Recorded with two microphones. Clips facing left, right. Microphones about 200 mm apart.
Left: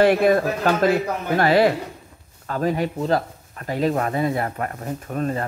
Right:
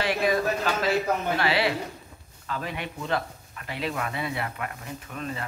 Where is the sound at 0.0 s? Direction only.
55° left (ahead or behind).